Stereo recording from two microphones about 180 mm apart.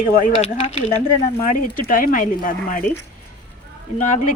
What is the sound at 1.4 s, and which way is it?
Speech, 50° left (ahead or behind).